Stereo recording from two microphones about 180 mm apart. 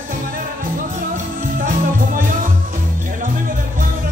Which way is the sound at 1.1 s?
50° right (ahead or behind).